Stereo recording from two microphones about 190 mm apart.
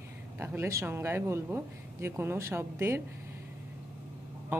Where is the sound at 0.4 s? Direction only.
15° right (ahead or behind).